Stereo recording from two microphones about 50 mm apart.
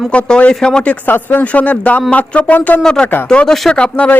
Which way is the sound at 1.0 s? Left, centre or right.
Left.